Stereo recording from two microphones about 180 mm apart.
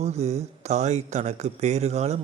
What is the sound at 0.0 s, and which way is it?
A man's voice, 35° right (ahead or behind).